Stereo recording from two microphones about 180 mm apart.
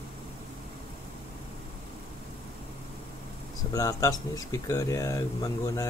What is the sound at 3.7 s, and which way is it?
Speech, 20° left (ahead or behind).